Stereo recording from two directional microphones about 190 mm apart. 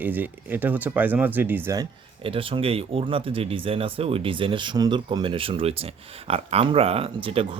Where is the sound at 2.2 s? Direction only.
30° right (ahead or behind).